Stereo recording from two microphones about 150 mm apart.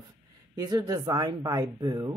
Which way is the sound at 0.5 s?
25° right (ahead or behind).